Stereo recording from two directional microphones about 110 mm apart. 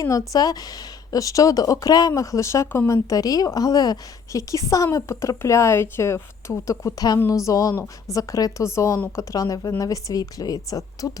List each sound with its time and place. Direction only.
0.0 s speech: 30° left (ahead or behind)